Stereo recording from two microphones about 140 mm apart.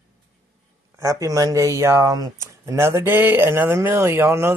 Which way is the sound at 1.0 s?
25° right (ahead or behind).